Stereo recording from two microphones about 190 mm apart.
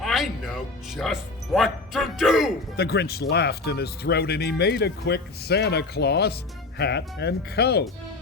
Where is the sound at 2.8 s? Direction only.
55° left (ahead or behind).